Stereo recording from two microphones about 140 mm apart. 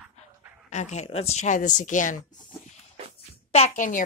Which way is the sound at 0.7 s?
55° left (ahead or behind).